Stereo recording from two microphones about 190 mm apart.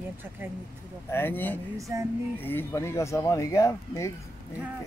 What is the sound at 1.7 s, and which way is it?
Female singing, 15° right (ahead or behind).